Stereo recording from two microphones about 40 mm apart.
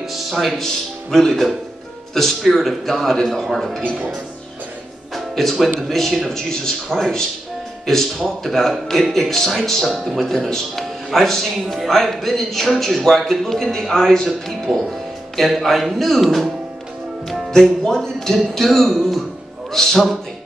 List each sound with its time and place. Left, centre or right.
0.1 s a man's voice: centre
5.1 s music: centre
5.6 s a man's voice: centre
14.9 s music: centre
15.5 s a man's voice: centre
17.5 s a man's voice: centre